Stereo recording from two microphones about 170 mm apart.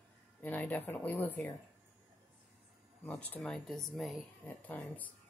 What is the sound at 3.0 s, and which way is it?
A woman's voice, 10° left (ahead or behind).